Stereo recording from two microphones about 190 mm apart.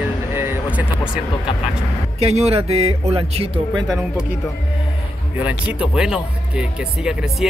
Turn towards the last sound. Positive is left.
turn(degrees=-5)  # may be behind; listen again after turning